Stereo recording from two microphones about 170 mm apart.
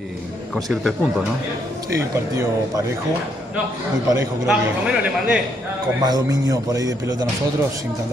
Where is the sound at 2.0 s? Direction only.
15° right (ahead or behind).